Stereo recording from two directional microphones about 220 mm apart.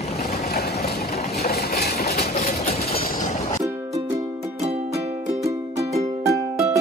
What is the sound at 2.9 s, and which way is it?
Train, 40° left (ahead or behind).